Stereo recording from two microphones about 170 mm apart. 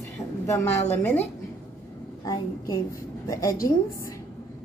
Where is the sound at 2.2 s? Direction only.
20° left (ahead or behind).